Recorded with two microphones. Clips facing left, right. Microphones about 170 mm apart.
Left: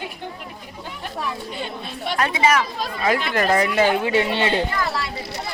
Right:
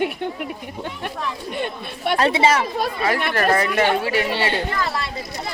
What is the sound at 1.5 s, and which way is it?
Speech, 60° right (ahead or behind).